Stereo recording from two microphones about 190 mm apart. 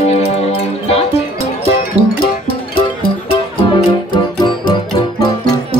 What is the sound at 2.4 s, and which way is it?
Music, 50° left (ahead or behind).